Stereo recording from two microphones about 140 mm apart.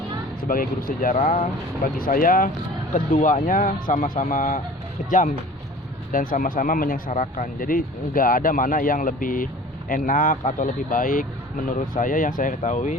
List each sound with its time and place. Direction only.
0.4 s speech: 85° left
2.9 s speech: 70° left (ahead or behind)